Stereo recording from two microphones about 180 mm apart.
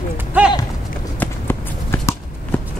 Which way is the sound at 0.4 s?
5° right (ahead or behind).